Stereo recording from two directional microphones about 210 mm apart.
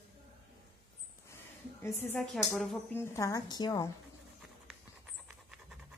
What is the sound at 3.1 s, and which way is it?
Speech, 15° left (ahead or behind).